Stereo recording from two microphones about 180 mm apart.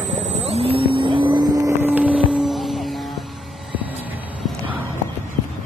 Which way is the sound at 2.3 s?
Centre (ahead or behind).